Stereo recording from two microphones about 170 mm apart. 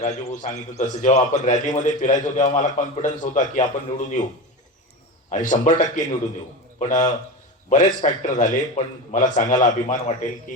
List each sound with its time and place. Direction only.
0.0 s a man's voice: 45° left (ahead or behind)
5.3 s a man's voice: 50° left (ahead or behind)